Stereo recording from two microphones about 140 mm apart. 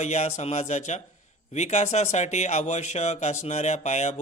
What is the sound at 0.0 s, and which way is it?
A man's voice, 55° left (ahead or behind).